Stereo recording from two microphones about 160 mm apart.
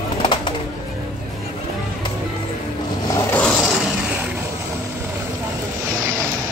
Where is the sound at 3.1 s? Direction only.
10° left (ahead or behind).